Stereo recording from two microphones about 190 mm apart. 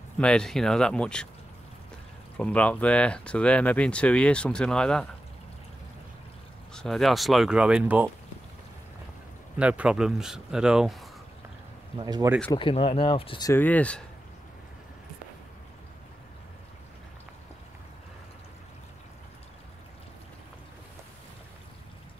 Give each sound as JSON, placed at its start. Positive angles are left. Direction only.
{"t": 0.2, "sound": "speech", "side_deg": 5}
{"t": 2.3, "sound": "speech", "side_deg": 5}
{"t": 6.7, "sound": "speech", "side_deg": 0}
{"t": 9.6, "sound": "speech", "side_deg": -5}
{"t": 12.0, "sound": "speech", "side_deg": -20}
{"t": 12.5, "sound": "speech", "side_deg": 30}
{"t": 13.5, "sound": "speech", "side_deg": 10}